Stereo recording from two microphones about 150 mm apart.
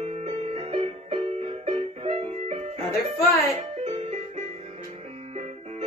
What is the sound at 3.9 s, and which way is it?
Music, 45° right (ahead or behind).